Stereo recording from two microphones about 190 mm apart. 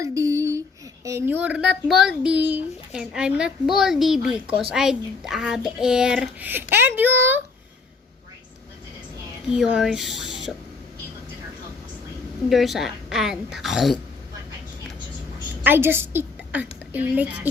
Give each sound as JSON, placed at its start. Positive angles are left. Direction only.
{"t": 0.0, "sound": "a sound", "side_deg": -15}
{"t": 1.0, "sound": "speech", "side_deg": -15}
{"t": 9.5, "sound": "speech", "side_deg": -5}
{"t": 12.5, "sound": "speech", "side_deg": 0}
{"t": 15.6, "sound": "a woman's voice", "side_deg": -10}